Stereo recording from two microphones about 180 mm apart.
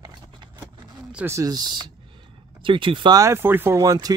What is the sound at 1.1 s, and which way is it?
Speech, 15° right (ahead or behind).